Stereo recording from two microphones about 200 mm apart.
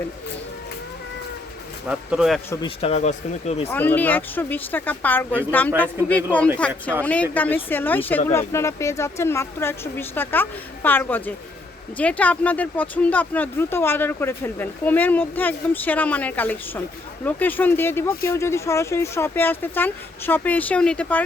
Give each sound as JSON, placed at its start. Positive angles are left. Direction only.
{"t": 1.9, "sound": "speech", "side_deg": -5}
{"t": 2.5, "sound": "speech", "side_deg": 25}
{"t": 3.7, "sound": "speech", "side_deg": 10}